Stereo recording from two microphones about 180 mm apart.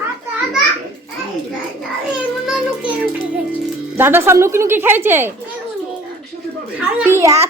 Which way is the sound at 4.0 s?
15° right (ahead or behind).